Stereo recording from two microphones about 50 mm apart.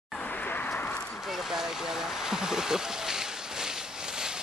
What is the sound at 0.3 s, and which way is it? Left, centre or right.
Vehicle, left.